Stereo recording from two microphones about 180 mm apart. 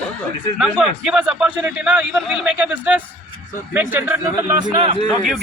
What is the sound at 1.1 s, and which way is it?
Speech, 5° right (ahead or behind).